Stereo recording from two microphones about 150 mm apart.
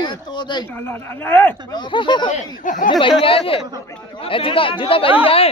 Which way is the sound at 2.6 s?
60° left (ahead or behind).